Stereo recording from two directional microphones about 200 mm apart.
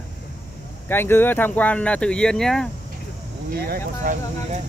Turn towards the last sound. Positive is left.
turn(degrees=-40)  # may be behind; listen again after turning